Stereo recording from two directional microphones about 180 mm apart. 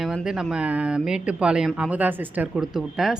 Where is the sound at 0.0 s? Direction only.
Centre (ahead or behind).